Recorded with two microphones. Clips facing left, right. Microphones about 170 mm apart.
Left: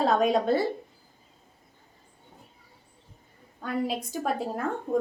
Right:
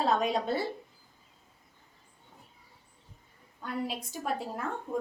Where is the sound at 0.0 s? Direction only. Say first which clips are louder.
Left 5 dB; 45° left (ahead or behind).